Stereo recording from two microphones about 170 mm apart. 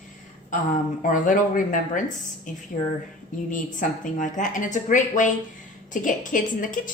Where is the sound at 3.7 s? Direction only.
50° left (ahead or behind).